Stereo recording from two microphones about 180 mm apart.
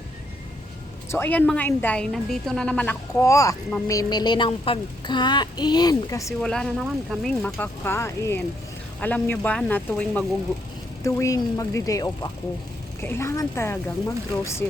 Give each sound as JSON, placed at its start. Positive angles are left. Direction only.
{"t": 1.1, "sound": "a woman's voice", "side_deg": 10}
{"t": 6.4, "sound": "a woman's voice", "side_deg": 5}